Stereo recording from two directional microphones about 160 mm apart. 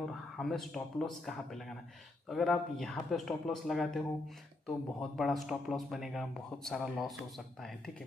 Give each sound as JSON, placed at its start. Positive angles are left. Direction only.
{"t": 0.4, "sound": "speech", "side_deg": 0}